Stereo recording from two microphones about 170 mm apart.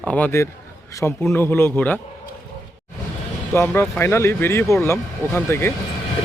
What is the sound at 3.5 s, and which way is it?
Speech, 15° left (ahead or behind).